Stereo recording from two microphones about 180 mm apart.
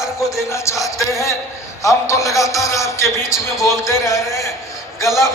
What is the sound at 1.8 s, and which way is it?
A man's voice, 15° left (ahead or behind).